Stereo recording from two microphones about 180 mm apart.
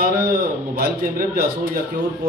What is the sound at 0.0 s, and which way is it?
A man's voice, 55° right (ahead or behind).